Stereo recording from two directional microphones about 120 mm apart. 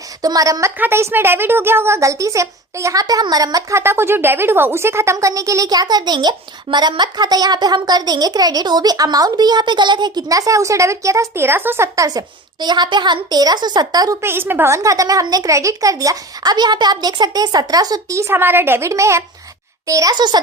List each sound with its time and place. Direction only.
0.2 s a child's voice: 30° right (ahead or behind)